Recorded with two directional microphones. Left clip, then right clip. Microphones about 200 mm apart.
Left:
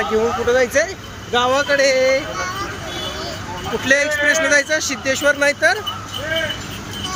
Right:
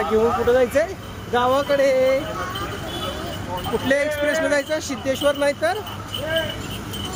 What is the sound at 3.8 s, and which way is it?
Speech, 10° right (ahead or behind).